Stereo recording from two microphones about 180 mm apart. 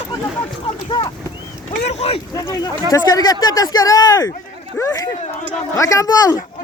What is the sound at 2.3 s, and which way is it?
Speech, 20° left (ahead or behind).